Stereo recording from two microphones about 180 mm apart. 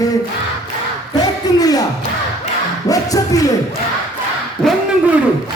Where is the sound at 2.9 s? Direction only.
20° left (ahead or behind).